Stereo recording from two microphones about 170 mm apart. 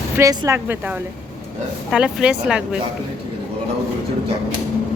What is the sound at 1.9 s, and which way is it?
Speech, 5° right (ahead or behind).